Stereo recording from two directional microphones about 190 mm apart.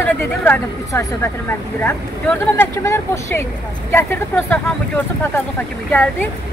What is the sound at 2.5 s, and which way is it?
A woman's voice, 15° left (ahead or behind).